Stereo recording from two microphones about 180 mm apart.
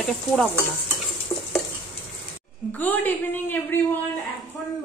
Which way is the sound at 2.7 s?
10° left (ahead or behind).